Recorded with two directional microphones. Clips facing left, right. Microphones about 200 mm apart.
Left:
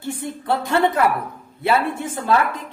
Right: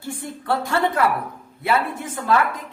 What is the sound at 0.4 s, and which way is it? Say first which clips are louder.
Speech: left 2 dB; 20° left (ahead or behind).